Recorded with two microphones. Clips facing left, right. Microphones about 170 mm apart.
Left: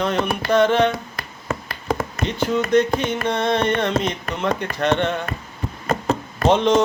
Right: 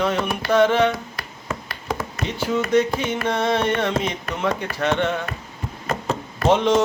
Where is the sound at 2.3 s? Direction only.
5° right (ahead or behind).